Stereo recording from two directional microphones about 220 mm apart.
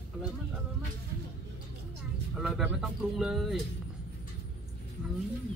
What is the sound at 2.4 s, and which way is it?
Speech, 5° right (ahead or behind).